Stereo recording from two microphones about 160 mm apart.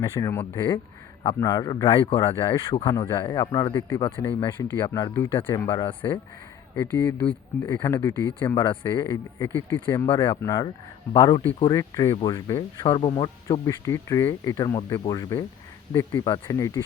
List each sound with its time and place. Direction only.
0.0 s speech: 20° left (ahead or behind)
2.8 s speech: 20° left (ahead or behind)
3.8 s speech: 15° left (ahead or behind)
4.0 s speech: 30° left (ahead or behind)
4.5 s speech: 20° left (ahead or behind)
5.7 s speech: 30° left (ahead or behind)
6.7 s speech: 15° left (ahead or behind)